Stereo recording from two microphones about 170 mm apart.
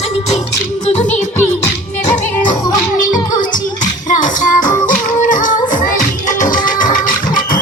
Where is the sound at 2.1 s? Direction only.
50° left (ahead or behind).